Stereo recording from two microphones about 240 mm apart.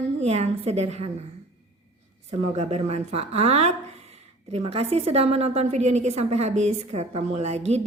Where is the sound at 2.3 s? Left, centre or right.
Right.